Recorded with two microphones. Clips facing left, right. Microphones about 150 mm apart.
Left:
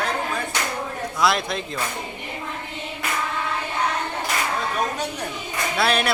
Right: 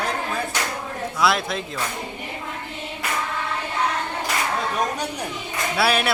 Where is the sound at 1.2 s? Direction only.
Centre (ahead or behind).